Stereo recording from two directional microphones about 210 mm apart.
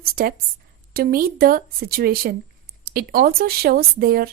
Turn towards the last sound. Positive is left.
turn(degrees=-45)  # may be behind; listen again after turning